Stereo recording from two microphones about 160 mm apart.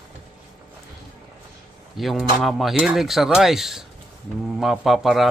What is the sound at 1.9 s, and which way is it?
A man's voice, centre (ahead or behind).